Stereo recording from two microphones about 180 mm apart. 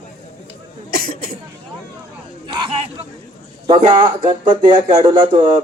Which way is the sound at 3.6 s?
30° right (ahead or behind).